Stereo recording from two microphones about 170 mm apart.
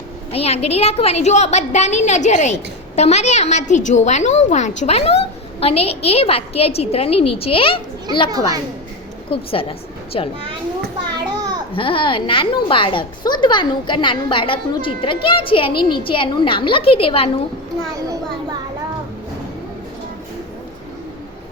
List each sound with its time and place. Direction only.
0.3 s a woman's voice: 35° left (ahead or behind)
8.3 s a child's voice: 20° right (ahead or behind)
9.3 s a woman's voice: 35° left (ahead or behind)
11.3 s babbling: 20° right (ahead or behind)
11.7 s a woman's voice: 30° left (ahead or behind)